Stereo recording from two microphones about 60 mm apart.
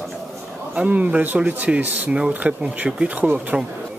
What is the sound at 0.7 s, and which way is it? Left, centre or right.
Speech, right.